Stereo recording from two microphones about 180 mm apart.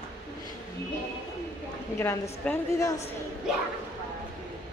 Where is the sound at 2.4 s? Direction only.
10° left (ahead or behind).